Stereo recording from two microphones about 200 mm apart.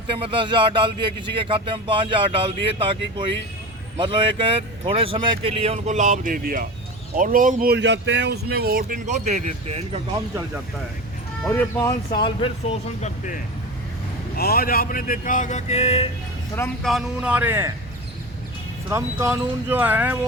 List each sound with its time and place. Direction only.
0.1 s speech: 25° right (ahead or behind)
11.4 s speech: 15° left (ahead or behind)
13.0 s speech: 40° left (ahead or behind)
14.3 s speech: 50° left (ahead or behind); by 16.0 s 30° left (ahead or behind)
16.8 s speech: 5° right (ahead or behind)
18.9 s speech: 15° right (ahead or behind)